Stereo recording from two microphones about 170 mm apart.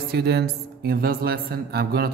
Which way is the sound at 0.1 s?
70° right (ahead or behind).